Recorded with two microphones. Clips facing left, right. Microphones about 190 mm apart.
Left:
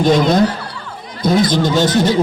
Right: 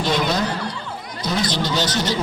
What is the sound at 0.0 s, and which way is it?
Speech, 50° left (ahead or behind).